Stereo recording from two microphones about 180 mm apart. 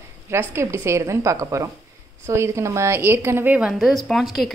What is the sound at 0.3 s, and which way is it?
A woman's voice, 15° right (ahead or behind).